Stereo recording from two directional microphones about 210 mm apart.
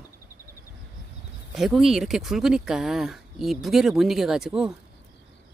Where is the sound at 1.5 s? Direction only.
Centre (ahead or behind).